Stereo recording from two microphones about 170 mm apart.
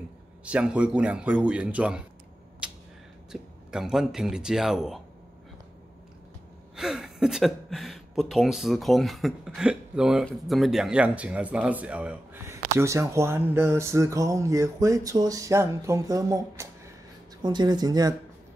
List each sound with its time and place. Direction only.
0.5 s speech: 5° right (ahead or behind)
2.6 s a sound: 5° right (ahead or behind)
3.3 s speech: 5° right (ahead or behind)
6.8 s speech: 5° right (ahead or behind); by 18.1 s 25° right (ahead or behind)